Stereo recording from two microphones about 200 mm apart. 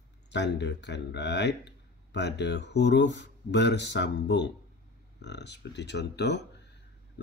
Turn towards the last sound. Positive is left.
turn(degrees=60)  # may be behind; listen again after turning